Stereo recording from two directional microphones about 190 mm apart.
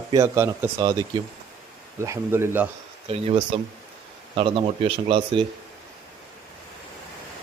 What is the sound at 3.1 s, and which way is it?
A man's voice, 30° right (ahead or behind).